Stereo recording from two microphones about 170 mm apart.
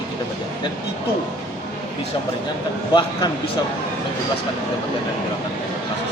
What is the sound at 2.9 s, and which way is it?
Speech, 25° left (ahead or behind).